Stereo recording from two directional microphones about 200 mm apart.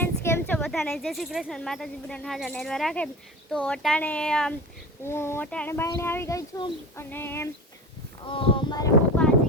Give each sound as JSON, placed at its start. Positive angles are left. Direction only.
{"t": 0.0, "sound": "speech", "side_deg": 10}
{"t": 8.3, "sound": "speech", "side_deg": 25}